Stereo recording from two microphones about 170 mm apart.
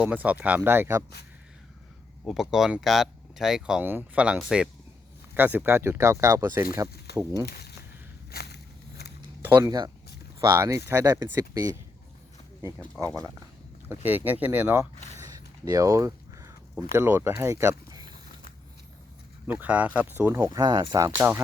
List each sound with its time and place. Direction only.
0.0 s speech: 10° right (ahead or behind)
2.2 s speech: 5° right (ahead or behind)
7.4 s speech: 70° left (ahead or behind)
8.3 s a sound: 70° left (ahead or behind)
9.6 s speech: 25° right (ahead or behind)
13.9 s speech: 10° right (ahead or behind)
15.6 s a sound: 20° right (ahead or behind)
16.9 s speech: 15° right (ahead or behind)
19.5 s speech: 10° right (ahead or behind)